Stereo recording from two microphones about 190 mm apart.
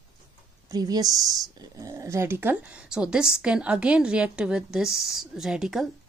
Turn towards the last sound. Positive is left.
turn(degrees=-5)  # may be behind; listen again after turning